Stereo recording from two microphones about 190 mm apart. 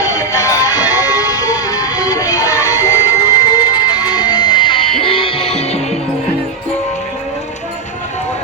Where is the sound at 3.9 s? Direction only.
20° left (ahead or behind).